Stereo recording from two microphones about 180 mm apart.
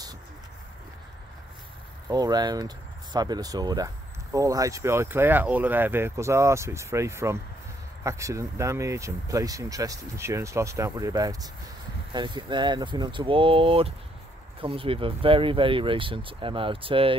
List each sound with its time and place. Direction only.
2.0 s speech: 20° right (ahead or behind)